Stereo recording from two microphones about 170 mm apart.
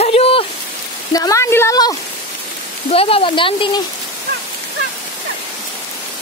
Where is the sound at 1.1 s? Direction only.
20° left (ahead or behind).